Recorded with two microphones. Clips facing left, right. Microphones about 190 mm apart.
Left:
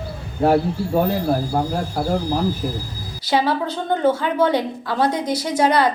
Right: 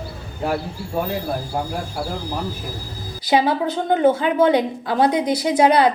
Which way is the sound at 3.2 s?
15° right (ahead or behind).